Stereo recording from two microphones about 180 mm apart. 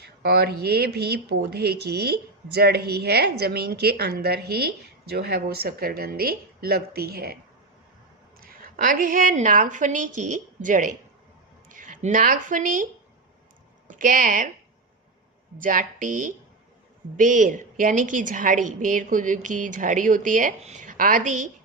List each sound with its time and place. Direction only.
0.0 s a woman's voice: 60° right (ahead or behind)
8.4 s a woman's voice: 50° right (ahead or behind)
15.5 s a woman's voice: 50° right (ahead or behind)